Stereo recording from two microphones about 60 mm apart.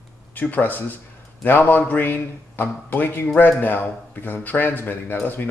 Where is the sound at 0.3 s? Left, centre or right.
Left.